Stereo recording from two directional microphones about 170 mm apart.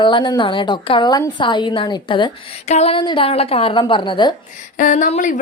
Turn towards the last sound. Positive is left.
turn(degrees=45)  # may be behind; listen again after turning